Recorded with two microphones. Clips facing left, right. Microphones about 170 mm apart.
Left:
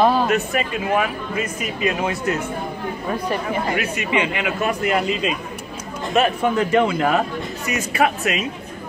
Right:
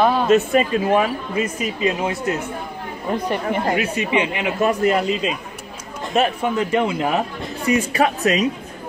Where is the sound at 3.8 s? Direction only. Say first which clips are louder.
Right 1 dB; 30° right (ahead or behind).